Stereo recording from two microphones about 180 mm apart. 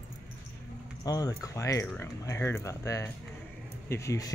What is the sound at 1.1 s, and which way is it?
Speech, 20° left (ahead or behind).